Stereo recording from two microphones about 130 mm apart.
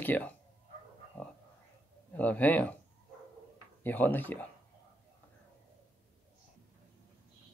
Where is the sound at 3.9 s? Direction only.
15° left (ahead or behind).